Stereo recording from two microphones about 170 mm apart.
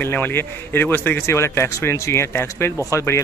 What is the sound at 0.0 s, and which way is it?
Speech, 10° left (ahead or behind).